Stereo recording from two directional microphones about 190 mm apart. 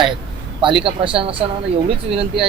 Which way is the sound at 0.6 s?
25° right (ahead or behind).